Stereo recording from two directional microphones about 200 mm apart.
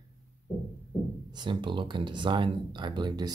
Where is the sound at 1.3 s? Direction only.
20° right (ahead or behind).